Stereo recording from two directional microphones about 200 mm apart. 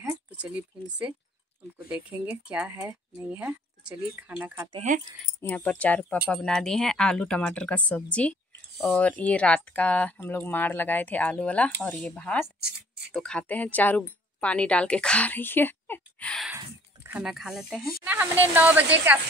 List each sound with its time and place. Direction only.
0.0 s a sound: 5° right (ahead or behind)
1.9 s a woman's voice: 5° right (ahead or behind)
4.7 s speech: 40° right (ahead or behind)
5.2 s a woman's voice: 10° left (ahead or behind); by 19.1 s 10° right (ahead or behind)